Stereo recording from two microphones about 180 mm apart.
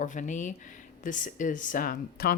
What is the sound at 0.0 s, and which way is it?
Speech, 45° left (ahead or behind).